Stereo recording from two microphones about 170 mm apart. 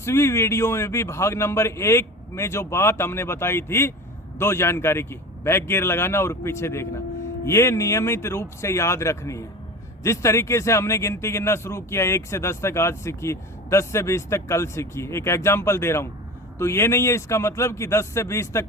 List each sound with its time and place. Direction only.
0.0 s speech: 15° left (ahead or behind)